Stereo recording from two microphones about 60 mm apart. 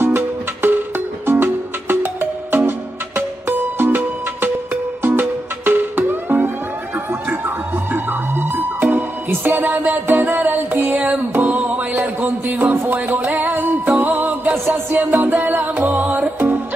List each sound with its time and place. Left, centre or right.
0.0 s music: right